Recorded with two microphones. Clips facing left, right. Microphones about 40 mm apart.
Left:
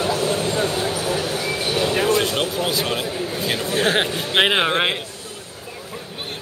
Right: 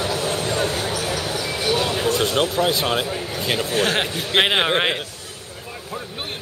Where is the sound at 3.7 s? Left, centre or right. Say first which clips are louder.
Left 2 dB; left.